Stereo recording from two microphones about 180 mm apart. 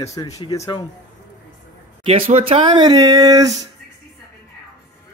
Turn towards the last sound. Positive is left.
turn(degrees=-20)  # may be behind; listen again after turning